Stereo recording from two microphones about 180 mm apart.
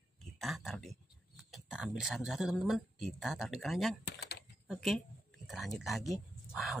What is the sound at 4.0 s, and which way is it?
Speech, 65° left (ahead or behind).